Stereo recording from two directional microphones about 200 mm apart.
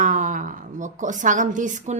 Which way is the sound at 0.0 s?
40° right (ahead or behind).